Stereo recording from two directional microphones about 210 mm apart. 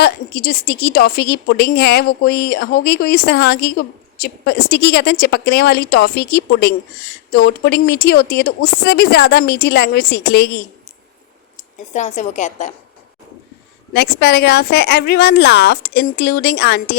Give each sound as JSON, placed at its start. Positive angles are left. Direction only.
{"t": 0.0, "sound": "a woman's voice", "side_deg": 50}
{"t": 11.5, "sound": "speech", "side_deg": 35}
{"t": 13.9, "sound": "a woman's voice", "side_deg": 50}